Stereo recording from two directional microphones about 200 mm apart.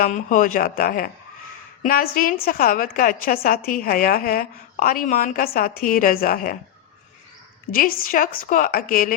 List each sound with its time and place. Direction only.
0.0 s a woman's voice: 40° left (ahead or behind)
7.7 s a woman's voice: 45° left (ahead or behind)